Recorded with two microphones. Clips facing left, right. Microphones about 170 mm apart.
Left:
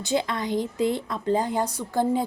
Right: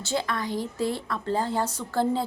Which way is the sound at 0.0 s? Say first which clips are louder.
Left 3 dB; 20° left (ahead or behind).